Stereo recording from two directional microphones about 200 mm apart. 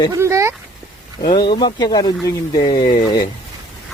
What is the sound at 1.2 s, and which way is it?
Speech, 20° left (ahead or behind).